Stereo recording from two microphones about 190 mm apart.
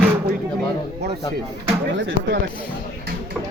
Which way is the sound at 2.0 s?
65° right (ahead or behind).